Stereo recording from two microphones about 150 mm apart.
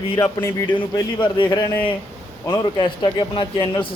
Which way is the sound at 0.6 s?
30° left (ahead or behind).